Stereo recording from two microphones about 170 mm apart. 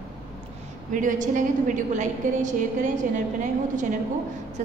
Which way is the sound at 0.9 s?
50° right (ahead or behind).